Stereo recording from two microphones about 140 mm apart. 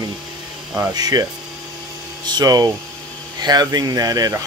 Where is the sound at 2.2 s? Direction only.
30° right (ahead or behind).